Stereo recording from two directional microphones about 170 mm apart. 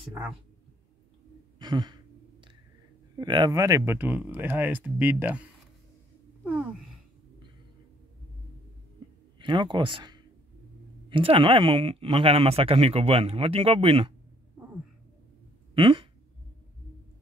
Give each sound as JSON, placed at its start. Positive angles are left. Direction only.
{"t": 1.6, "sound": "sigh", "side_deg": -25}
{"t": 3.2, "sound": "speech", "side_deg": -25}
{"t": 6.4, "sound": "speech", "side_deg": -5}
{"t": 9.4, "sound": "speech", "side_deg": -30}
{"t": 15.7, "sound": "speech", "side_deg": -30}